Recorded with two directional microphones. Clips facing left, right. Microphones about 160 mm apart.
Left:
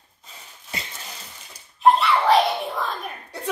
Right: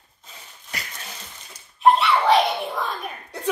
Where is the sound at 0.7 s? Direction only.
25° left (ahead or behind).